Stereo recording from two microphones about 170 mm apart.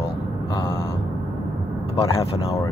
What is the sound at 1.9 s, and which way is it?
Speech, 35° left (ahead or behind).